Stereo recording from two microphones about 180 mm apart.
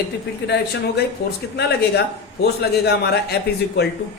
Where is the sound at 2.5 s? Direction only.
65° left (ahead or behind).